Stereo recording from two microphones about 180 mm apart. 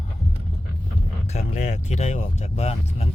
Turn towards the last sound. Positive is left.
turn(degrees=35)  # may be behind; listen again after turning